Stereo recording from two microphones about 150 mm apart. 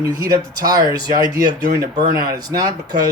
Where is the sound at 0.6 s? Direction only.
25° right (ahead or behind).